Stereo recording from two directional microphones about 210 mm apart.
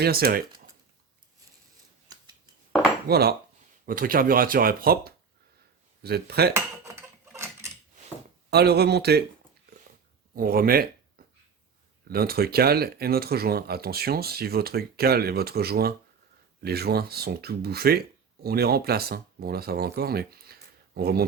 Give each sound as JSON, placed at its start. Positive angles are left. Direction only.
{"t": 0.0, "sound": "speech", "side_deg": -45}
{"t": 3.1, "sound": "speech", "side_deg": -50}
{"t": 7.3, "sound": "a sound", "side_deg": -10}
{"t": 8.4, "sound": "speech", "side_deg": -50}
{"t": 10.3, "sound": "speech", "side_deg": -45}